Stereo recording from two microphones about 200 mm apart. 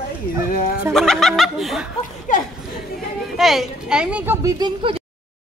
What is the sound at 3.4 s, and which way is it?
A woman's voice, centre (ahead or behind).